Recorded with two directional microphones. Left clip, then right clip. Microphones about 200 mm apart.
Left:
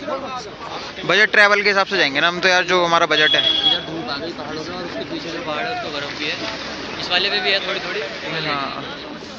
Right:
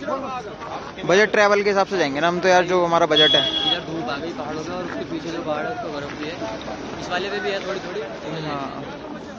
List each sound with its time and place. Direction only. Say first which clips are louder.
1.0 s speech: left 3 dB; 15° right (ahead or behind)
7.1 s speech: left 7 dB; 35° right (ahead or behind)